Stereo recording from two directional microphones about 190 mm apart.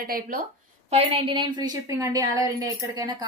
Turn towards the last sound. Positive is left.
turn(degrees=-20)  # may be behind; listen again after turning